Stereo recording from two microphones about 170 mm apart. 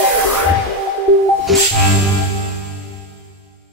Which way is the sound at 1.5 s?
Centre (ahead or behind).